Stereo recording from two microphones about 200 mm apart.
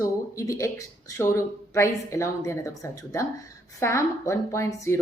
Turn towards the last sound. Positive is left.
turn(degrees=15)  # may be behind; listen again after turning